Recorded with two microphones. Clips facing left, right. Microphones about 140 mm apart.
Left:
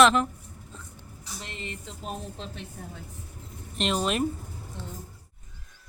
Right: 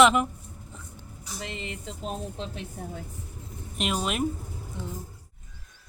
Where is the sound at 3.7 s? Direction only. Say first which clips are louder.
Left 2 dB; 5° right (ahead or behind).